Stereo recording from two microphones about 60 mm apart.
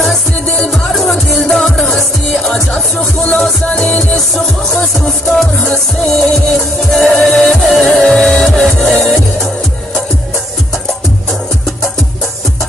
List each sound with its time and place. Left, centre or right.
0.7 s music: centre
2.7 s music: centre
4.3 s music: centre